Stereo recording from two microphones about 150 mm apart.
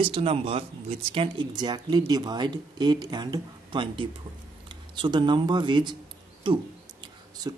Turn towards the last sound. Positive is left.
turn(degrees=-25)  # may be behind; listen again after turning